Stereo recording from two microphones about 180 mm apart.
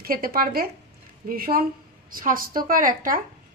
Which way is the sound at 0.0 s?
55° right (ahead or behind).